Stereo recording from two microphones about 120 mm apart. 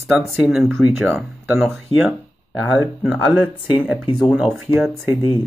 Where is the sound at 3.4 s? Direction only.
15° right (ahead or behind).